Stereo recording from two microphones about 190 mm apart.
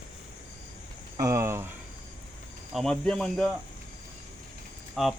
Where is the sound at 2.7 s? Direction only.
Centre (ahead or behind).